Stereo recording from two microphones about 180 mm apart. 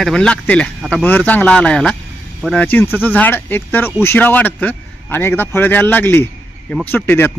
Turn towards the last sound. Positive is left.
turn(degrees=10)  # may be behind; listen again after turning